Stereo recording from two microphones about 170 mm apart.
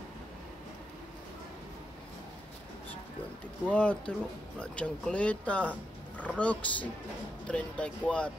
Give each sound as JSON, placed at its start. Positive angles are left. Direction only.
{"t": 3.7, "sound": "speech", "side_deg": 10}